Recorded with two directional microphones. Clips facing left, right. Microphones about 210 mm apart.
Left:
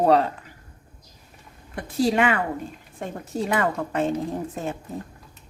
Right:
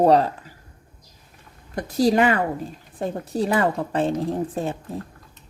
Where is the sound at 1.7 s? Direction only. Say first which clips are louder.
Right 3 dB; 40° right (ahead or behind).